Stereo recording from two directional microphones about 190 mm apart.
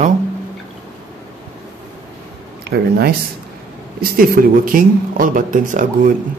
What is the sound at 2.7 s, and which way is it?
Speech, 60° right (ahead or behind).